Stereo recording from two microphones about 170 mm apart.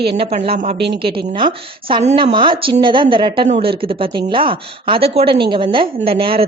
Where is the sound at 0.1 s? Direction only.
30° right (ahead or behind).